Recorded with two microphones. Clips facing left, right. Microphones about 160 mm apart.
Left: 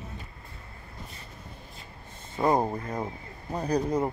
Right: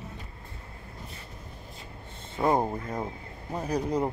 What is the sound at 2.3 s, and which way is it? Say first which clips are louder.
Speech: left 1 dB; centre (ahead or behind).